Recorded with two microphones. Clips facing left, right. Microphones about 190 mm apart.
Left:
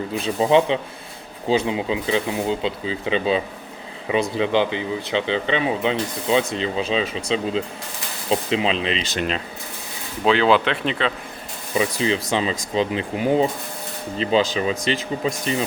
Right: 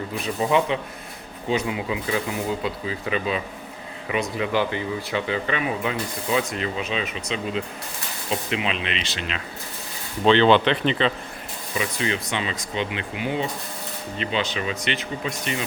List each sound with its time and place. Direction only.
0.2 s speech: 30° left (ahead or behind)
10.2 s speech: 5° left (ahead or behind)
11.8 s speech: 30° left (ahead or behind)